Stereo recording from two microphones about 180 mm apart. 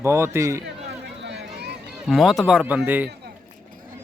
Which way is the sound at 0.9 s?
70° right (ahead or behind).